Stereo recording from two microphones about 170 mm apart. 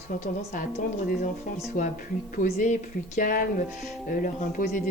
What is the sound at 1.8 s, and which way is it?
A woman's voice, 50° left (ahead or behind).